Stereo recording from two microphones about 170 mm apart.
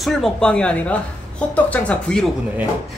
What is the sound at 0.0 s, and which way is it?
A man's voice, centre (ahead or behind).